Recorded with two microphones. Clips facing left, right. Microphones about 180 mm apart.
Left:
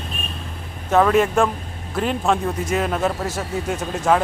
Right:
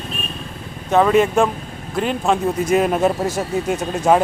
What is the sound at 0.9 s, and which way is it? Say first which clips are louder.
Speech: right 2 dB; 5° right (ahead or behind).